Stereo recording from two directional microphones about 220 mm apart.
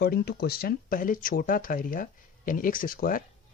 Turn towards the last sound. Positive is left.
turn(degrees=40)  # may be behind; listen again after turning